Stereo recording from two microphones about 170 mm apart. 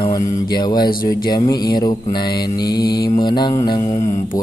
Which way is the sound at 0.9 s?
60° left (ahead or behind).